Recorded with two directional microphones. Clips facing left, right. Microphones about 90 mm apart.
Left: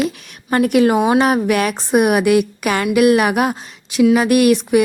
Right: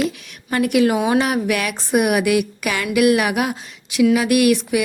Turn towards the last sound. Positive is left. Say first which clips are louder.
# left 4 dB
turn(degrees=35)  # may be behind; listen again after turning